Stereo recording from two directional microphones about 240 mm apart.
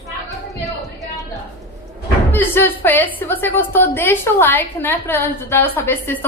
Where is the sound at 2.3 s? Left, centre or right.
Centre.